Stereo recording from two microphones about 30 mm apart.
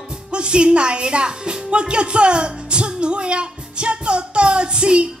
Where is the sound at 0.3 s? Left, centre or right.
Right.